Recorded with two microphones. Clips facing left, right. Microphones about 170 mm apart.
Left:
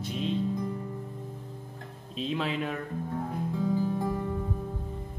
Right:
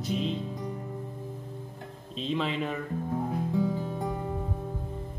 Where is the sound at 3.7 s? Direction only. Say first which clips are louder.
Left 4 dB; 20° right (ahead or behind).